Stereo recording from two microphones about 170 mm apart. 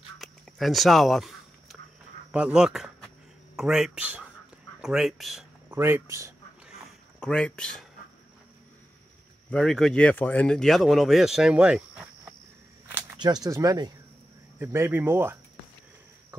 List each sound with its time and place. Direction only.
0.2 s duck: centre (ahead or behind)
2.3 s speech: 5° right (ahead or behind)
5.7 s speech: 15° right (ahead or behind)
7.2 s speech: 5° left (ahead or behind)
9.5 s speech: 5° left (ahead or behind)
13.2 s speech: 25° right (ahead or behind)